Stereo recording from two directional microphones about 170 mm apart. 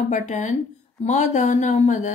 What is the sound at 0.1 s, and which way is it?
A woman's voice, 45° left (ahead or behind).